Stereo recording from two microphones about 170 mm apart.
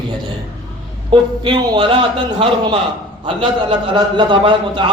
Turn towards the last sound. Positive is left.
turn(degrees=-30)  # may be behind; listen again after turning